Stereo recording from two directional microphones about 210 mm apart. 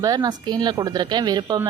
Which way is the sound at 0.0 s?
20° right (ahead or behind).